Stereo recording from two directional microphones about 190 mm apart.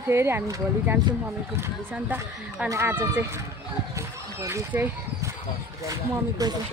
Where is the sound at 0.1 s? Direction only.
15° right (ahead or behind).